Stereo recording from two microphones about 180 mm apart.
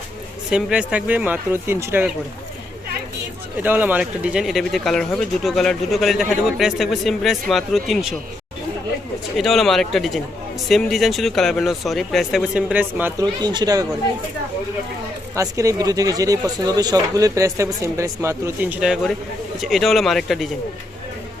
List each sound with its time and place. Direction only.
0.5 s speech: 5° right (ahead or behind)
3.6 s speech: 10° right (ahead or behind)
9.4 s speech: centre (ahead or behind); by 13.8 s 20° right (ahead or behind)
15.4 s speech: 15° right (ahead or behind)
18.8 s speech: 5° right (ahead or behind)